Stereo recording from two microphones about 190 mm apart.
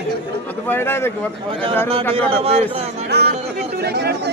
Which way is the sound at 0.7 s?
10° left (ahead or behind).